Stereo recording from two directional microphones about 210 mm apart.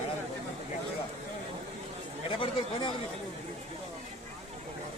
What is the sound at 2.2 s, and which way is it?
Chatter, 25° left (ahead or behind).